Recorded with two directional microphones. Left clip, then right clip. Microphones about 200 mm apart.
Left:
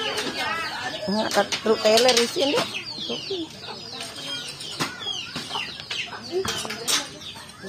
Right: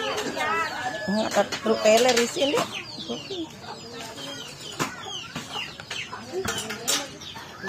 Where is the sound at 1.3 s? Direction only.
25° left (ahead or behind).